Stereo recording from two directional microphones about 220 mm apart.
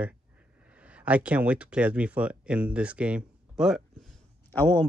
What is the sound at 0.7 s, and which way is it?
Speech, 5° right (ahead or behind).